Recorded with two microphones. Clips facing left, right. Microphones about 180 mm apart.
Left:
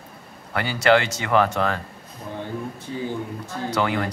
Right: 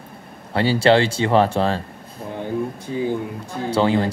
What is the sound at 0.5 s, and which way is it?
Speech, 30° right (ahead or behind).